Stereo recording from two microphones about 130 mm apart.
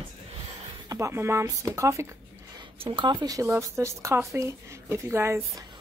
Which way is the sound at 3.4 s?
20° right (ahead or behind).